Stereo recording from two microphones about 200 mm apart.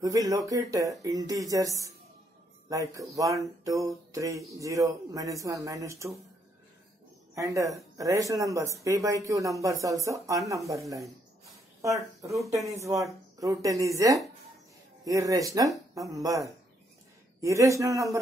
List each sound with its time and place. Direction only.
0.0 s speech: 15° right (ahead or behind)
7.3 s speech: 15° right (ahead or behind)
10.7 s a sound: 15° right (ahead or behind)
12.7 s speech: 15° right (ahead or behind)
17.4 s speech: 15° right (ahead or behind)